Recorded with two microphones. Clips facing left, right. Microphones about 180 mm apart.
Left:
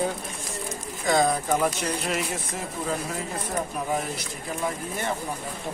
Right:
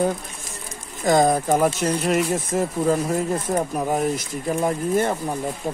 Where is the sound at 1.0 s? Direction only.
45° right (ahead or behind).